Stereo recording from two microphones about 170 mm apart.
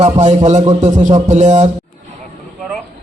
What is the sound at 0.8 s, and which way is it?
Speech, 45° right (ahead or behind).